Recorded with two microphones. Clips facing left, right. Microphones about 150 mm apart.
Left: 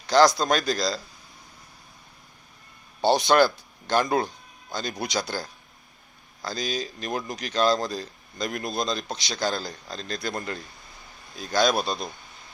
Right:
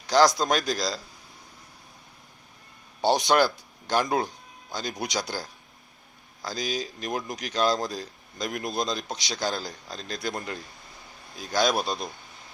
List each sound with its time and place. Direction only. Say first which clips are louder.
0.1 s speech: left 2 dB; 15° right (ahead or behind)
3.0 s speech: left 2 dB; 15° right (ahead or behind)